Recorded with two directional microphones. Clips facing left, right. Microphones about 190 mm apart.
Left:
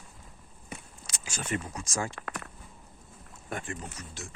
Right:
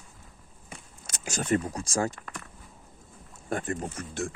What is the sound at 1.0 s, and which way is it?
Speech, 45° right (ahead or behind).